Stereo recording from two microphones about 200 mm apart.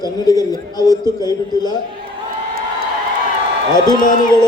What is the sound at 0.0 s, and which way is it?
A man's voice, 20° left (ahead or behind).